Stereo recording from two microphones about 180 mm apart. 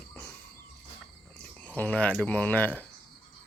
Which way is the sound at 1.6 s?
10° left (ahead or behind).